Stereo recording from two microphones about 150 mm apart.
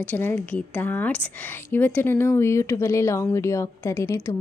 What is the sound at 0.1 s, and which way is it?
A woman's voice, 15° left (ahead or behind).